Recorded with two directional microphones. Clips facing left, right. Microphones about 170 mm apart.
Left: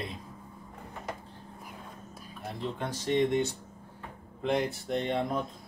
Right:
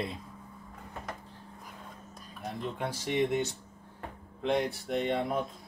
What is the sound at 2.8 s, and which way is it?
Speech, 10° right (ahead or behind).